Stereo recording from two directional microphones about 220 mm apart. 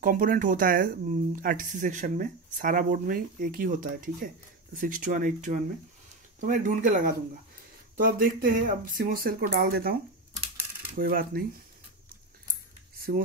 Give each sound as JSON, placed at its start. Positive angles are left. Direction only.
{"t": 0.0, "sound": "speech", "side_deg": -40}
{"t": 11.0, "sound": "speech", "side_deg": -40}